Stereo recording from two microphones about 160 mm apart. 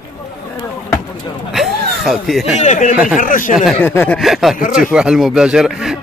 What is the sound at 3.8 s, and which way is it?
Speech, 10° left (ahead or behind).